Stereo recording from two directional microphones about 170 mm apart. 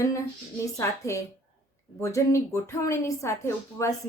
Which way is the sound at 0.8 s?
15° left (ahead or behind).